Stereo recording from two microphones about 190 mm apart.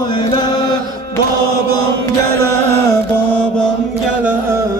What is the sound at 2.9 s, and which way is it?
Mantra, 10° left (ahead or behind).